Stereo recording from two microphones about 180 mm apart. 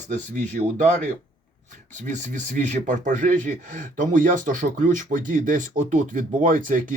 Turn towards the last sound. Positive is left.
turn(degrees=-50)  # may be behind; listen again after turning